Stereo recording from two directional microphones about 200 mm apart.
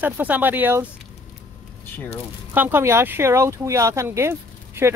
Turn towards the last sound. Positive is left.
turn(degrees=-10)  # may be behind; listen again after turning